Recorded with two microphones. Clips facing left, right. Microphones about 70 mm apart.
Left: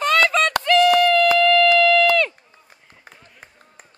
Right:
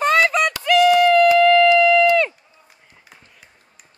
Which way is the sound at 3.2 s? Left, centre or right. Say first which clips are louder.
Left 4 dB; left.